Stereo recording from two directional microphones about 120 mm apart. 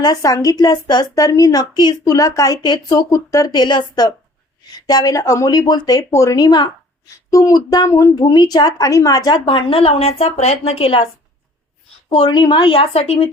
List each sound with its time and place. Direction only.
0.0 s a woman's voice: 30° left (ahead or behind); by 11.0 s 50° left (ahead or behind)
12.0 s a woman's voice: 45° left (ahead or behind)